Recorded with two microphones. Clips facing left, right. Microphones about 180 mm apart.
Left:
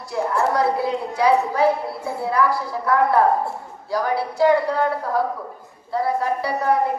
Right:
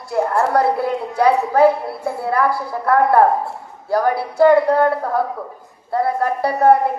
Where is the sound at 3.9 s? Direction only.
55° right (ahead or behind).